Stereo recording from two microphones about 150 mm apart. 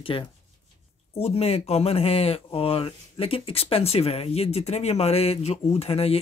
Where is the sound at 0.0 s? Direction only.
35° left (ahead or behind).